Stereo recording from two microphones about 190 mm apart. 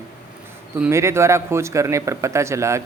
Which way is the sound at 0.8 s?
15° right (ahead or behind).